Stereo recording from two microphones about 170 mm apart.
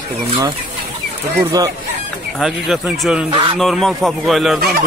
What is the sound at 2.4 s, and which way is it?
Speech, centre (ahead or behind).